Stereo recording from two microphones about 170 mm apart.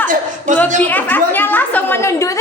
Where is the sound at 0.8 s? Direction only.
10° left (ahead or behind).